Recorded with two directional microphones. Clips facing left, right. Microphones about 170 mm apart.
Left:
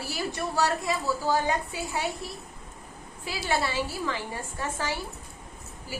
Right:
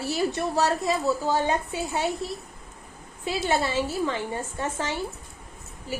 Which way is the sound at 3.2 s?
25° right (ahead or behind).